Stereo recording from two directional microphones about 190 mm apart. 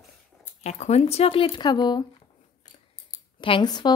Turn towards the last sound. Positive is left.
turn(degrees=20)  # may be behind; listen again after turning